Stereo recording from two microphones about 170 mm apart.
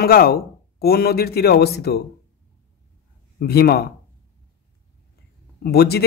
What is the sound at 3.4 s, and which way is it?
Speech, 70° left (ahead or behind).